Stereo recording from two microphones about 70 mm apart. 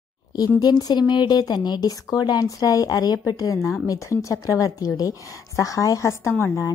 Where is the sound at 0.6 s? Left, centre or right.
Left.